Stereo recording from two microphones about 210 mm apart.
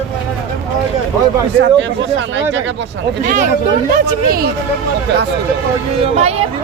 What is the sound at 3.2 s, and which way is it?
Speech, 35° right (ahead or behind).